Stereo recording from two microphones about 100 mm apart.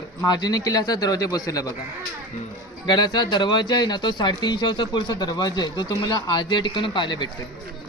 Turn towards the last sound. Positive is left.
turn(degrees=50)  # may be behind; listen again after turning